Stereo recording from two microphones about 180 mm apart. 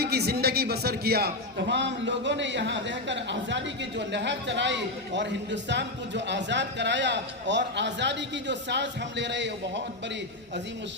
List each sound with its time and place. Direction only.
0.0 s a man's voice: 60° right (ahead or behind); by 9.8 s 80° right